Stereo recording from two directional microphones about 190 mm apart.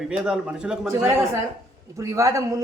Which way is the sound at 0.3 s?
5° right (ahead or behind).